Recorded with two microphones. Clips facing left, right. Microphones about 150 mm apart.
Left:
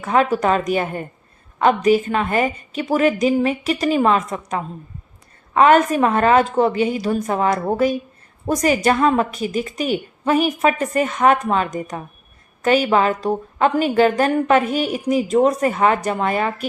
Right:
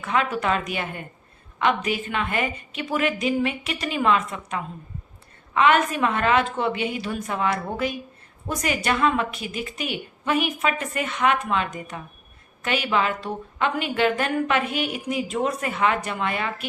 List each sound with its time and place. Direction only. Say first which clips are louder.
0.0 s a woman's voice: left 7 dB; 40° left (ahead or behind)